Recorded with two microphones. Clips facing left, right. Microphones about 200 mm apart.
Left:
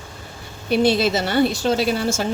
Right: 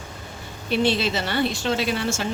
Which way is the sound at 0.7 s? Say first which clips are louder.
Left 5 dB; 40° left (ahead or behind).